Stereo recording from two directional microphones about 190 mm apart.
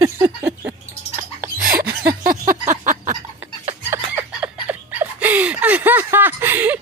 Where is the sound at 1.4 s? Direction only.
50° right (ahead or behind).